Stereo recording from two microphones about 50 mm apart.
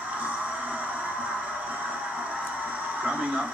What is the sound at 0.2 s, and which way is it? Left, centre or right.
Music, right.